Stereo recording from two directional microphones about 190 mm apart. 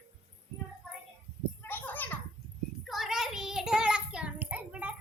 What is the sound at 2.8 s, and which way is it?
Child singing, centre (ahead or behind).